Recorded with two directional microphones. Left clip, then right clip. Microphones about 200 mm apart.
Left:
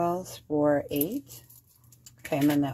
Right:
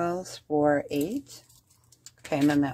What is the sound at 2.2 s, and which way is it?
Speech, 25° right (ahead or behind).